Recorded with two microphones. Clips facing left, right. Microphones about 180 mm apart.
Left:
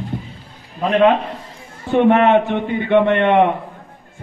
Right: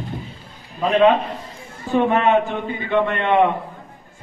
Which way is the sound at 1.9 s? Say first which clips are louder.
Left 4 dB; 65° left (ahead or behind).